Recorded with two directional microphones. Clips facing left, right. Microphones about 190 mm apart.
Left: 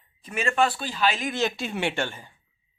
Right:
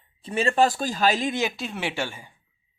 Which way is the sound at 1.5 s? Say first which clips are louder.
Left 2 dB; centre (ahead or behind).